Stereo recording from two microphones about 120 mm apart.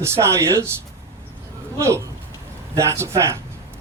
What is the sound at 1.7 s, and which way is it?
Speech, 25° right (ahead or behind).